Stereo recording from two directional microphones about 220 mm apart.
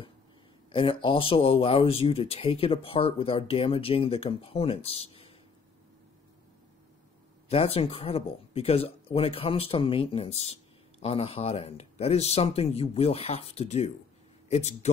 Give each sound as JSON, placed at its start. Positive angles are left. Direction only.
{"t": 0.7, "sound": "speech", "side_deg": 25}
{"t": 7.4, "sound": "speech", "side_deg": 25}